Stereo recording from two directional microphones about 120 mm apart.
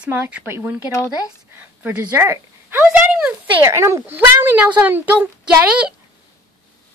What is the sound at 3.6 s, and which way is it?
Speech, 25° right (ahead or behind).